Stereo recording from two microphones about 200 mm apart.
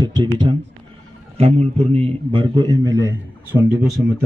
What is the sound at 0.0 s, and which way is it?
A man's voice, 20° right (ahead or behind).